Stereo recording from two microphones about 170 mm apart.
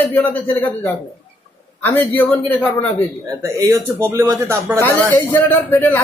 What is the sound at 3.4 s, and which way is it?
Speech, 15° right (ahead or behind).